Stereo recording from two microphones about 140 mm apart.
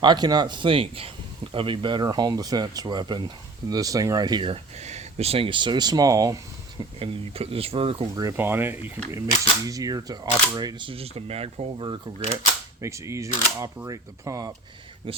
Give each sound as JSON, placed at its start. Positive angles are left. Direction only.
{"t": 0.0, "sound": "speech", "side_deg": -30}
{"t": 4.8, "sound": "speech", "side_deg": -55}
{"t": 7.0, "sound": "speech", "side_deg": -45}
{"t": 8.1, "sound": "speech", "side_deg": -25}
{"t": 12.8, "sound": "speech", "side_deg": -20}